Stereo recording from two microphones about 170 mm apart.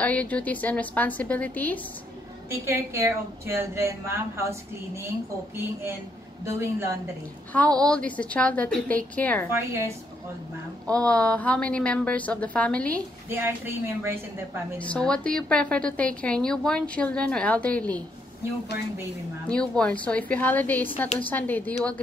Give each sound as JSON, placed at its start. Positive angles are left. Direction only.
{"t": 0.0, "sound": "a woman's voice", "side_deg": 10}
{"t": 2.5, "sound": "a woman's voice", "side_deg": -15}
{"t": 6.4, "sound": "a woman's voice", "side_deg": -15}
{"t": 7.5, "sound": "a woman's voice", "side_deg": 5}
{"t": 9.5, "sound": "a woman's voice", "side_deg": -15}
{"t": 10.9, "sound": "a woman's voice", "side_deg": 5}
{"t": 13.3, "sound": "a woman's voice", "side_deg": -15}
{"t": 14.9, "sound": "a woman's voice", "side_deg": 5}
{"t": 19.4, "sound": "a woman's voice", "side_deg": 5}